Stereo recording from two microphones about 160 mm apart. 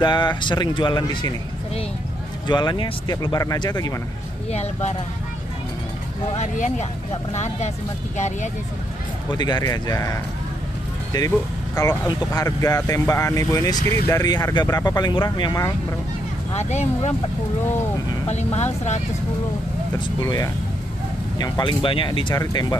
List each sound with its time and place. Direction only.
0.0 s speech: 30° left (ahead or behind)
2.4 s speech: 25° left (ahead or behind)
4.5 s speech: 40° left (ahead or behind)
6.3 s speech: 45° left (ahead or behind)
9.3 s speech: 25° left (ahead or behind)
11.1 s speech: 20° left (ahead or behind)
16.5 s speech: 45° left (ahead or behind)
18.2 s speech: 40° left (ahead or behind)
20.2 s speech: 20° left (ahead or behind)